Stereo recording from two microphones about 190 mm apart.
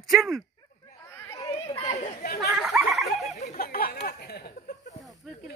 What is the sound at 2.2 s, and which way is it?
Chatter, 55° left (ahead or behind).